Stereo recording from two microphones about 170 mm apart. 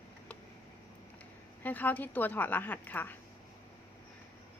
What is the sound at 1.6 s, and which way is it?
A woman's voice, 10° left (ahead or behind).